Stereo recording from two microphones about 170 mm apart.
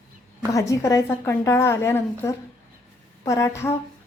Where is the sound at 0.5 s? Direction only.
20° left (ahead or behind).